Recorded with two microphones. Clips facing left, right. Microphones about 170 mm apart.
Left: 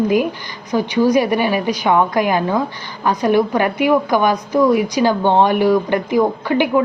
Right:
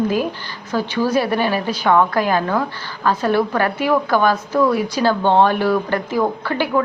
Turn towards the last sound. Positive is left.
turn(degrees=15)  # may be behind; listen again after turning